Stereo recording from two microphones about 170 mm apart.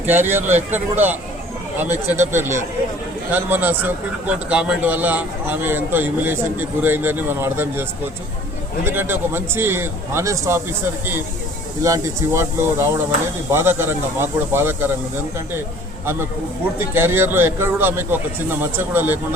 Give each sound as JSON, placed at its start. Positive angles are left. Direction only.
{"t": 0.0, "sound": "a man's voice", "side_deg": -10}
{"t": 11.8, "sound": "a man's voice", "side_deg": -15}
{"t": 16.9, "sound": "a man's voice", "side_deg": -15}